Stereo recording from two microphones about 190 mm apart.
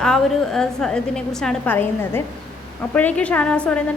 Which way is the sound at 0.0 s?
5° left (ahead or behind).